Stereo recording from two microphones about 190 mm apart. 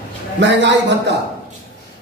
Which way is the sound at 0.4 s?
65° right (ahead or behind).